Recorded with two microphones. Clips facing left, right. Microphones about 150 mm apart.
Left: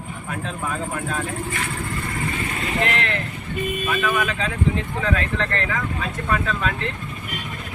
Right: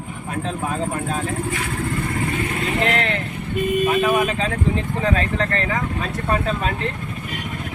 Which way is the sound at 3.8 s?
40° right (ahead or behind).